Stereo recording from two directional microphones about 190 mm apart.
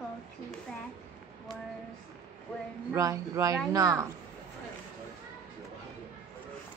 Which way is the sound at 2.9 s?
15° right (ahead or behind).